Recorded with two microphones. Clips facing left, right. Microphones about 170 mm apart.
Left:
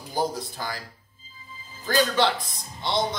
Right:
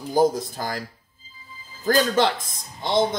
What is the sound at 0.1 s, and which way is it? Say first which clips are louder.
Speech: right 8 dB; 45° right (ahead or behind).